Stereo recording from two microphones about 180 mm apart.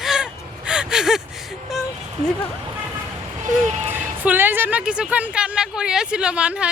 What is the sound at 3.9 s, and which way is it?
Speech, 10° right (ahead or behind).